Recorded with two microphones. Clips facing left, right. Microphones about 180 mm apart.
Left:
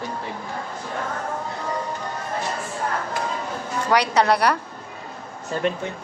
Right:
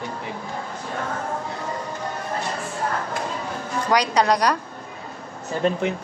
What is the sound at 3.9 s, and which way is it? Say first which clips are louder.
Speech: left 1 dB; 15° right (ahead or behind).